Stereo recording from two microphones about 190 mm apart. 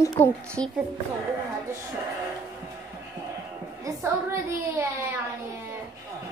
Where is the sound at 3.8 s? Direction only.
15° right (ahead or behind).